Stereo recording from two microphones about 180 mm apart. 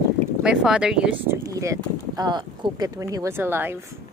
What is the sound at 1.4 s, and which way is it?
Speech, 20° right (ahead or behind).